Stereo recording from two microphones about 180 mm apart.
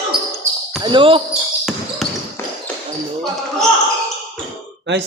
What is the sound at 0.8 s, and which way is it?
Speech, 25° right (ahead or behind).